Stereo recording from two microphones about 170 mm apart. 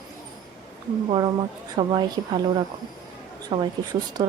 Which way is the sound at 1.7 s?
25° right (ahead or behind).